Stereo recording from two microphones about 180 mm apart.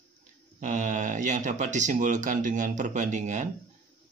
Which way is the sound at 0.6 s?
45° right (ahead or behind).